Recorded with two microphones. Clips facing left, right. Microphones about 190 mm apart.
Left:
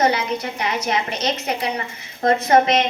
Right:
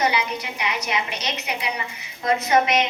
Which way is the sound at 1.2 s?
50° left (ahead or behind).